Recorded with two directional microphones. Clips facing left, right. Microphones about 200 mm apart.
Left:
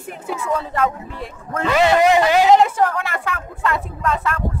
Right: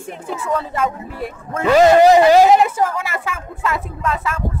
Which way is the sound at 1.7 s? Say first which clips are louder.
Right 5 dB; 35° right (ahead or behind).